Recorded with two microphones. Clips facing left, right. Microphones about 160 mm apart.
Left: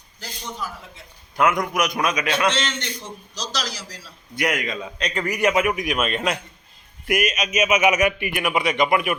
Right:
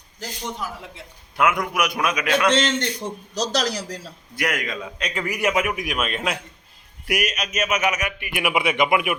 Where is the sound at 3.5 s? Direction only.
60° right (ahead or behind).